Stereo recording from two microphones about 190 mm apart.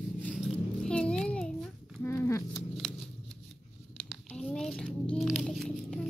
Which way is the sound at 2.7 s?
Centre (ahead or behind).